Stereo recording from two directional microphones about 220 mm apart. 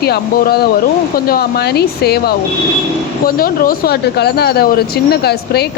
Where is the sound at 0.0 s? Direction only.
45° left (ahead or behind).